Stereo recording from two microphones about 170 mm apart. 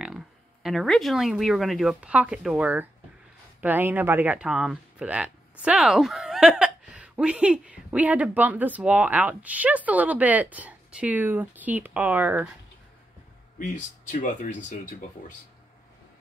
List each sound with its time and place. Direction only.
0.0 s speech: centre (ahead or behind)
14.1 s speech: 50° left (ahead or behind)